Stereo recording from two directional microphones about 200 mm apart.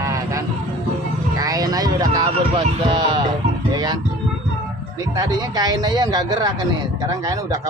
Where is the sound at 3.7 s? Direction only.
20° right (ahead or behind).